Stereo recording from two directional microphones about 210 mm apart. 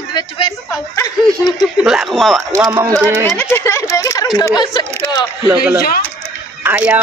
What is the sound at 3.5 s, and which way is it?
Speech, 15° left (ahead or behind).